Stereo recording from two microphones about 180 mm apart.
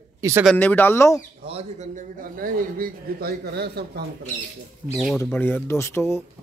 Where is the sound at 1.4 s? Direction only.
40° right (ahead or behind); by 4.0 s 65° right (ahead or behind).